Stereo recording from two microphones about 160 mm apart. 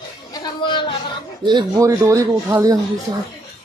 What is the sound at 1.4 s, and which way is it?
Speech, 30° right (ahead or behind).